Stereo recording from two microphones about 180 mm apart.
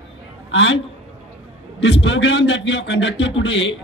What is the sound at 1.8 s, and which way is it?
A man's voice, 80° left.